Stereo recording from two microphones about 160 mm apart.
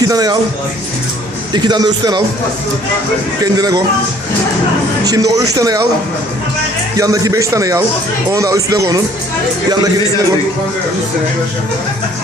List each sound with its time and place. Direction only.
0.0 s speech: 25° right (ahead or behind)
1.5 s speech: 25° right (ahead or behind)
3.4 s speech: 25° right (ahead or behind)
5.0 s speech: 20° right (ahead or behind)
6.9 s speech: 20° right (ahead or behind)